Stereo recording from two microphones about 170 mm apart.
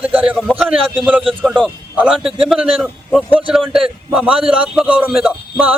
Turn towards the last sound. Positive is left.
turn(degrees=0)  # may be behind; listen again after turning